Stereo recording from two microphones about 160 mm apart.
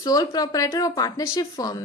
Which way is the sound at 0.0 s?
20° left (ahead or behind).